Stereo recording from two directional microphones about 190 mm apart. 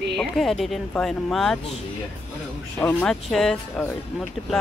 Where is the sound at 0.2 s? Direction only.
Centre (ahead or behind).